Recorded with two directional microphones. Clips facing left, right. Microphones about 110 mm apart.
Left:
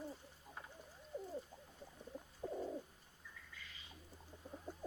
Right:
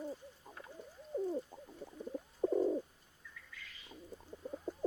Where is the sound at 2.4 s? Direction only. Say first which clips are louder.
Right 12 dB; 40° right (ahead or behind).